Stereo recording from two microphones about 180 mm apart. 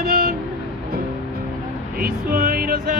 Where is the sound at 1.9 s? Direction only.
55° right (ahead or behind).